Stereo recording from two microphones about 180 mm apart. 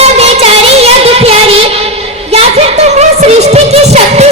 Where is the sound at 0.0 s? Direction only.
35° right (ahead or behind).